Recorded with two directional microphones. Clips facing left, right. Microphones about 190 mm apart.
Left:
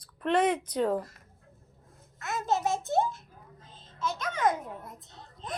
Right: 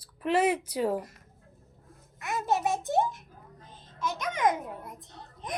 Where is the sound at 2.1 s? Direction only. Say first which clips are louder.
Right 1 dB; 15° right (ahead or behind).